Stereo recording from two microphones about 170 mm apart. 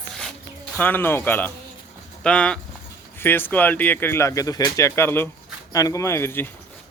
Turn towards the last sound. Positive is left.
turn(degrees=15)  # may be behind; listen again after turning